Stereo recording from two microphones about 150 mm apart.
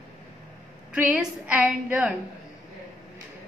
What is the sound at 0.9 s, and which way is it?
A woman's voice, 5° right (ahead or behind).